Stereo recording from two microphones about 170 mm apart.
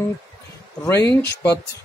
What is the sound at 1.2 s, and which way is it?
Speech, 75° left (ahead or behind).